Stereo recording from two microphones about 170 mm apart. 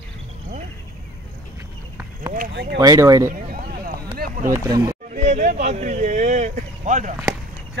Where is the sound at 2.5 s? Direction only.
85° right.